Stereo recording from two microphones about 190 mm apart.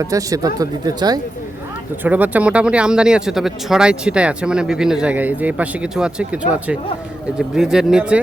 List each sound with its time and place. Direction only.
0.0 s speech: 15° right (ahead or behind)
2.0 s speech: 10° right (ahead or behind)